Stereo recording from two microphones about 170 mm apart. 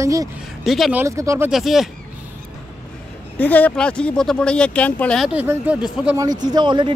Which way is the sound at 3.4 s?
10° left (ahead or behind).